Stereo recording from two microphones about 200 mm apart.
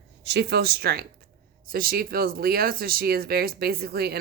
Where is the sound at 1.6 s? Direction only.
45° right (ahead or behind).